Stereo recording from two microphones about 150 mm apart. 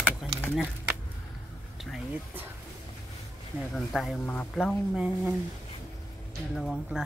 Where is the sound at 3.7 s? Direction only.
Centre (ahead or behind).